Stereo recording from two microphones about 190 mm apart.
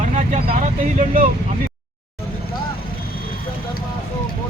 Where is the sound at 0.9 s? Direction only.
40° right (ahead or behind).